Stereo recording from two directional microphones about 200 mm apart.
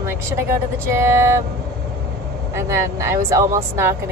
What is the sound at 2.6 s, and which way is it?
A woman's voice, 15° right (ahead or behind).